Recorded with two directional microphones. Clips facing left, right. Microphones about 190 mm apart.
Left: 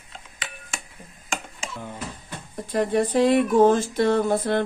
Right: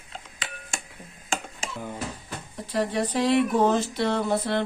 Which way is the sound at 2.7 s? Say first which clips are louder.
Left 4 dB; 50° left (ahead or behind).